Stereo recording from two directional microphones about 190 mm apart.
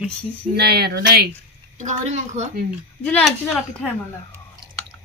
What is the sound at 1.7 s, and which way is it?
Speech, 40° right (ahead or behind).